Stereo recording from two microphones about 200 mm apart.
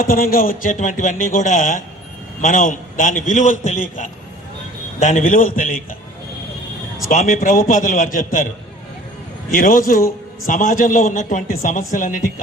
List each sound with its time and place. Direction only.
0.0 s a man's voice: 45° left (ahead or behind)
7.1 s a man's voice: 40° left (ahead or behind)
9.5 s a man's voice: 40° left (ahead or behind)